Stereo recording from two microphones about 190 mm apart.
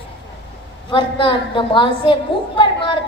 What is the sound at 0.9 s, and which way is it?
A woman's voice, 25° left (ahead or behind).